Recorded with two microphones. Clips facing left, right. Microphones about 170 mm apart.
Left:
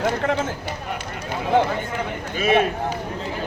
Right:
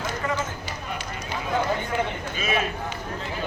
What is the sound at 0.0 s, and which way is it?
Run, 65° left (ahead or behind).